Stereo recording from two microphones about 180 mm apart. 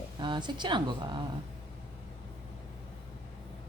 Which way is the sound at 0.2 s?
25° right (ahead or behind).